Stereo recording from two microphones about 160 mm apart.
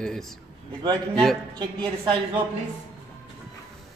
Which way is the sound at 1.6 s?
30° right (ahead or behind).